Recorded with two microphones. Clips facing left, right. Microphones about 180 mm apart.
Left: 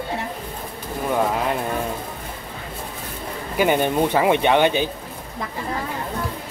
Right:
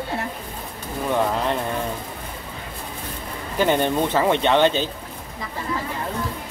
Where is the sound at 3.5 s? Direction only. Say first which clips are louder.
Left 1 dB; 10° left (ahead or behind).